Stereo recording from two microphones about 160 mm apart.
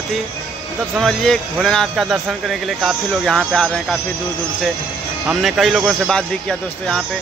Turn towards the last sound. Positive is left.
turn(degrees=5)  # may be behind; listen again after turning